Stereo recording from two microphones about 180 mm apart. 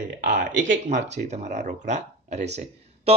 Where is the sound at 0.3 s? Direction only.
45° right (ahead or behind).